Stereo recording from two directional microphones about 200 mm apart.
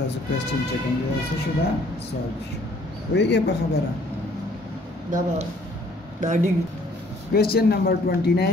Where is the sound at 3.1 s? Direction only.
55° left (ahead or behind).